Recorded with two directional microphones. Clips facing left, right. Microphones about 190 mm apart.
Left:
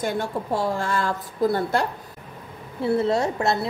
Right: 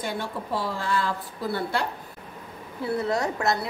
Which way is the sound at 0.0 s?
45° left (ahead or behind).